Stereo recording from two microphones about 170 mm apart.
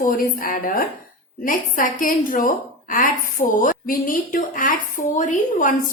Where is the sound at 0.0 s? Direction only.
55° left (ahead or behind).